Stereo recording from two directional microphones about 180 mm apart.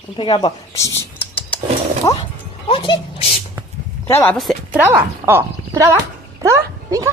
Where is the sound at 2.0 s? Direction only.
20° left (ahead or behind).